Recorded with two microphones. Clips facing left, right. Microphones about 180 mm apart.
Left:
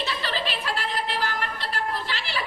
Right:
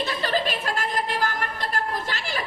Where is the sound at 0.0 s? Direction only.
45° right (ahead or behind).